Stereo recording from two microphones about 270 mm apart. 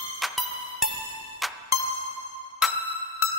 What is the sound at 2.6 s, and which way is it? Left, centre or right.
Music, centre.